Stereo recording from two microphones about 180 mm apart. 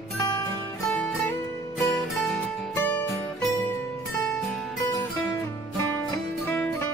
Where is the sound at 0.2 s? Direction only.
20° left (ahead or behind).